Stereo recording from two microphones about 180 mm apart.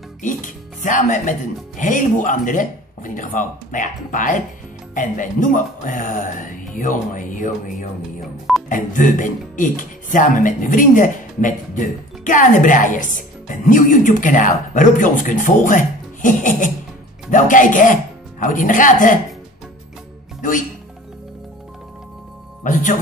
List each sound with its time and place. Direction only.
0.2 s music: 45° left (ahead or behind)
1.8 s speech: 45° left (ahead or behind)
22.6 s speech: 45° left (ahead or behind)